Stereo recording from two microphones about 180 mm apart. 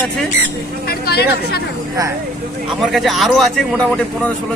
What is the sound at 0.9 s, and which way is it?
Speech, 60° left (ahead or behind).